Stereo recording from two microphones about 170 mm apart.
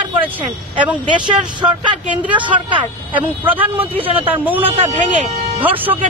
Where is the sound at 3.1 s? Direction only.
10° right (ahead or behind).